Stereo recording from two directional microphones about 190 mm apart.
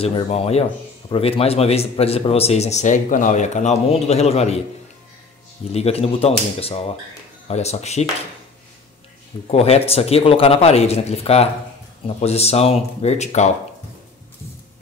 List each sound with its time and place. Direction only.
0.0 s speech: 30° left (ahead or behind)
5.7 s speech: 35° left (ahead or behind)
9.5 s speech: 30° left (ahead or behind)